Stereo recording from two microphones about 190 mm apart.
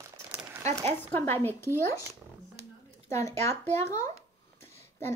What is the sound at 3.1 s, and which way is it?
Speech, 15° left (ahead or behind).